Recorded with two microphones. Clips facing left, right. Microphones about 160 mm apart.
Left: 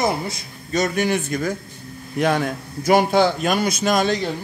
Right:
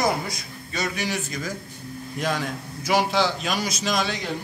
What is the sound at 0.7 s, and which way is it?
A man's voice, 50° left (ahead or behind).